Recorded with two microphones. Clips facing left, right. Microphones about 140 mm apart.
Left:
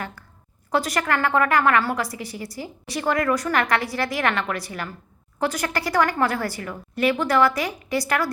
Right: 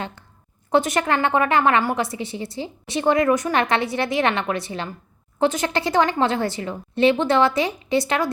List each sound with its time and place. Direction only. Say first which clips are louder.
0.7 s a woman's voice: right 3 dB; 20° right (ahead or behind)